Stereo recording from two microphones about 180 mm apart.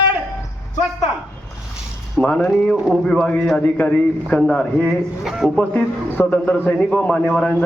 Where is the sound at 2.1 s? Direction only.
5° left (ahead or behind).